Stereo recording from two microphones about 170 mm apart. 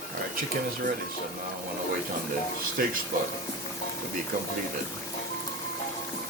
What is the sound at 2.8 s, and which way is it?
Speech, 60° right (ahead or behind).